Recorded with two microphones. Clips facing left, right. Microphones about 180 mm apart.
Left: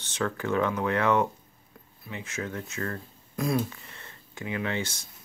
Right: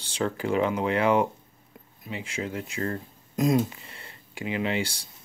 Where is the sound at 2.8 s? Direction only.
20° right (ahead or behind).